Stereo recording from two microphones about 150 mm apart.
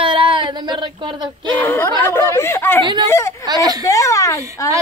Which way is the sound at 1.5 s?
15° left (ahead or behind).